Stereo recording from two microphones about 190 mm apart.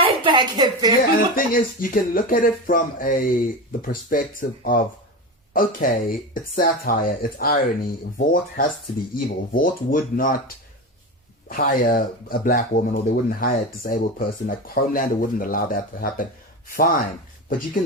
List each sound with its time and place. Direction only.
0.0 s a woman's voice: 25° right (ahead or behind)
1.4 s speech: 45° left (ahead or behind)
11.4 s speech: 50° left (ahead or behind)